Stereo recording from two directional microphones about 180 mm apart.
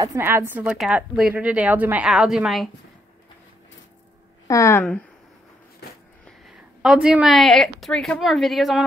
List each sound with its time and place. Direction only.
0.0 s speech: 15° right (ahead or behind)
4.5 s a woman's voice: 15° left (ahead or behind)
6.8 s a woman's voice: 5° right (ahead or behind)